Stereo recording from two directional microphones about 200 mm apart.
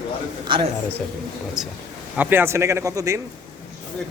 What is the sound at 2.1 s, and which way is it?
A man's voice, 10° right (ahead or behind).